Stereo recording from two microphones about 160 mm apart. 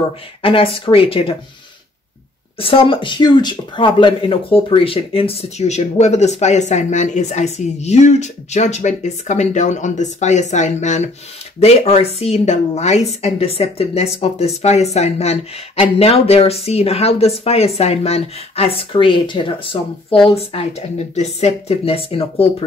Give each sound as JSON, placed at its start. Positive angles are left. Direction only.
{"t": 0.4, "sound": "speech", "side_deg": 35}
{"t": 2.6, "sound": "speech", "side_deg": 35}